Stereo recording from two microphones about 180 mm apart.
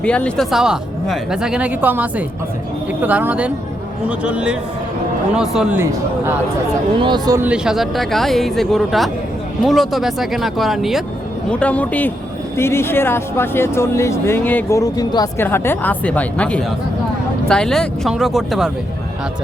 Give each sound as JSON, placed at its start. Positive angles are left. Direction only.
{"t": 0.0, "sound": "speech", "side_deg": 5}
{"t": 7.4, "sound": "speech", "side_deg": -5}